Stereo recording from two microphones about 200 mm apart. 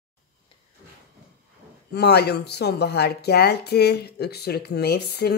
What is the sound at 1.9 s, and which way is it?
Speech, 55° left (ahead or behind).